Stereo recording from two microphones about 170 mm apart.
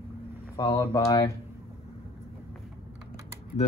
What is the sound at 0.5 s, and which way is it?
Speech, 20° left (ahead or behind).